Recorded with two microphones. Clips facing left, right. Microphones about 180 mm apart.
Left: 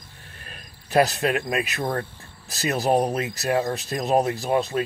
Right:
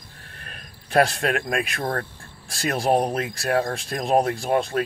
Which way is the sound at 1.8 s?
15° left (ahead or behind).